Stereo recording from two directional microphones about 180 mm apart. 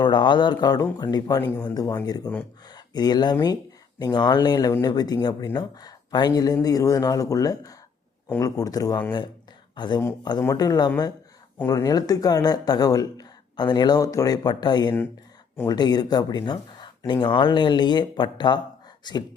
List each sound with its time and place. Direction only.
0.0 s speech: 25° left (ahead or behind)